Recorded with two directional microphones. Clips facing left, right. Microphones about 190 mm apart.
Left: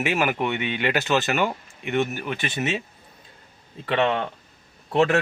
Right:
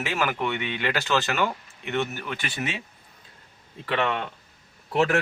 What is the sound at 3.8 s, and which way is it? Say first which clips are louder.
A man's voice: left 4 dB; 25° left (ahead or behind).